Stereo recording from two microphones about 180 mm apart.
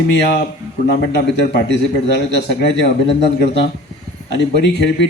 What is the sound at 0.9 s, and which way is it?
A man's voice, 70° left (ahead or behind).